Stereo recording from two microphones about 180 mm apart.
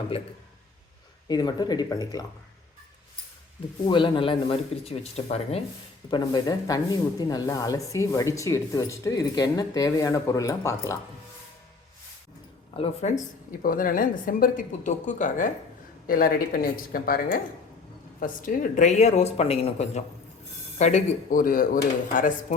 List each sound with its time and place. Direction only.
1.3 s speech: 25° left (ahead or behind)
3.8 s a woman's voice: 30° left (ahead or behind)
6.1 s speech: 25° left (ahead or behind)
12.7 s a woman's voice: 35° left (ahead or behind)